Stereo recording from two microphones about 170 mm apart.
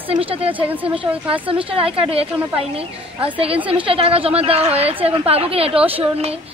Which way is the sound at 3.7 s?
35° right (ahead or behind).